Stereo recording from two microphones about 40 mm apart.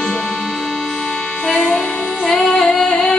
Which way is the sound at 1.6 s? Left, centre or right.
Left.